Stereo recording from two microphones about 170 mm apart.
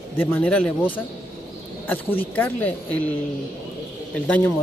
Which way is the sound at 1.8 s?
10° left (ahead or behind).